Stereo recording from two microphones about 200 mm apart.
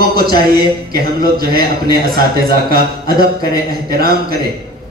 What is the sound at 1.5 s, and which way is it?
A man's voice, 50° right (ahead or behind).